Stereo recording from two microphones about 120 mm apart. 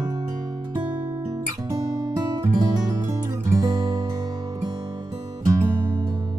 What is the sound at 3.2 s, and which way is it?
Music, 25° right (ahead or behind).